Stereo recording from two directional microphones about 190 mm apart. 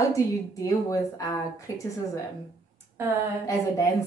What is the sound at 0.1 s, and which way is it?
A woman's voice, 15° left (ahead or behind).